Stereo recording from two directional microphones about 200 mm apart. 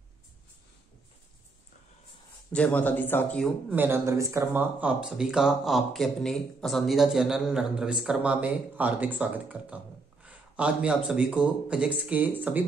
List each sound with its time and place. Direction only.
2.5 s speech: 5° left (ahead or behind)
3.7 s speech: 10° right (ahead or behind)